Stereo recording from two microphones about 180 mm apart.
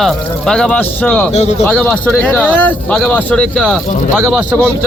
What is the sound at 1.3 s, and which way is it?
Speech, 40° left (ahead or behind).